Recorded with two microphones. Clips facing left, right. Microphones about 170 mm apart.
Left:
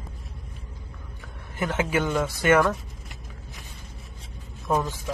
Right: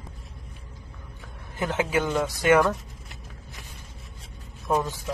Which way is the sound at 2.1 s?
15° right (ahead or behind).